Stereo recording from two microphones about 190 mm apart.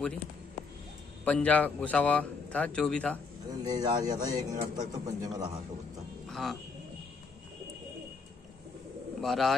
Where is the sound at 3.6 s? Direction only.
20° right (ahead or behind).